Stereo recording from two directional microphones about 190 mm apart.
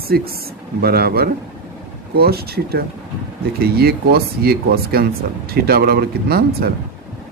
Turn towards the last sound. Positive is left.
turn(degrees=-55)  # may be behind; listen again after turning